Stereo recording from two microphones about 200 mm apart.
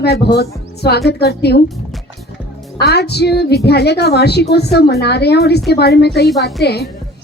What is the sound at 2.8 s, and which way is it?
A woman's voice, 55° left (ahead or behind).